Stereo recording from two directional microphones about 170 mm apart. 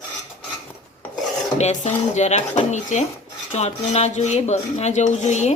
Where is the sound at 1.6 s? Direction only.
40° left (ahead or behind).